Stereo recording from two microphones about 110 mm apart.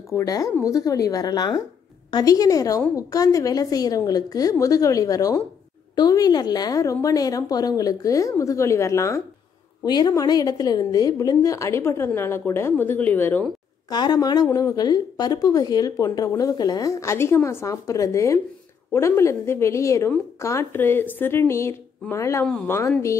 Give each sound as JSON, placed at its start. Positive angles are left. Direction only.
{"t": 0.1, "sound": "a woman's voice", "side_deg": 30}
{"t": 9.8, "sound": "a woman's voice", "side_deg": 40}
{"t": 13.8, "sound": "a woman's voice", "side_deg": 35}